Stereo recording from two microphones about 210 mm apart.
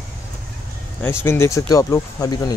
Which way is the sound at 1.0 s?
10° left (ahead or behind).